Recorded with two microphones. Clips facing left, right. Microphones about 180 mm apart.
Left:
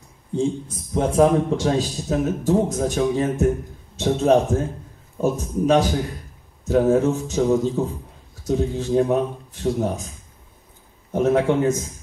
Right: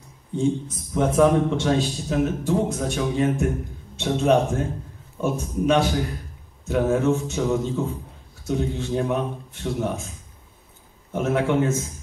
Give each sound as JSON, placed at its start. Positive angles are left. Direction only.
{"t": 0.9, "sound": "speech", "side_deg": 30}
{"t": 11.1, "sound": "speech", "side_deg": 35}